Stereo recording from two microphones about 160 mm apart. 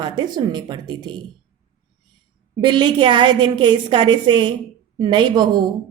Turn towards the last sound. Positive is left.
turn(degrees=-25)  # may be behind; listen again after turning